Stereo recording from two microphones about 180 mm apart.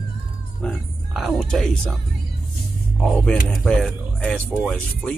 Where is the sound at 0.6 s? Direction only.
Centre (ahead or behind).